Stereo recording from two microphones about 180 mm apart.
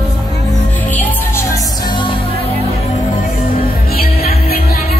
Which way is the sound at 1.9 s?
25° left (ahead or behind).